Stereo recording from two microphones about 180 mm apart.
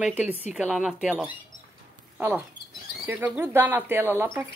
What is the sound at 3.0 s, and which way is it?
Speech, 10° right (ahead or behind).